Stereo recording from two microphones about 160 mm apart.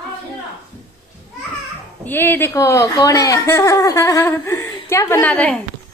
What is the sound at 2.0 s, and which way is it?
Speech, 10° left (ahead or behind).